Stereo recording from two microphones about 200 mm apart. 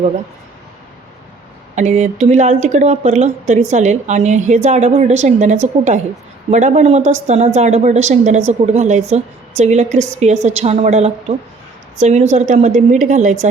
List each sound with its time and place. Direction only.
1.7 s a woman's voice: 35° right (ahead or behind)